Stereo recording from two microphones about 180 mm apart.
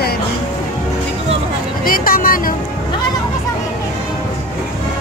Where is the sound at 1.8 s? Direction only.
50° left (ahead or behind).